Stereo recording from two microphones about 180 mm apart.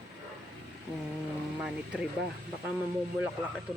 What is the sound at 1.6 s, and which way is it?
Speech, 5° right (ahead or behind).